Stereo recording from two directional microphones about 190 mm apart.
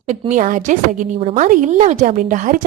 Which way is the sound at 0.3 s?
40° right (ahead or behind).